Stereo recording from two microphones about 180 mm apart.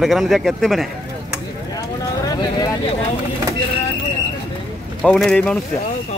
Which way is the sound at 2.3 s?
20° left (ahead or behind).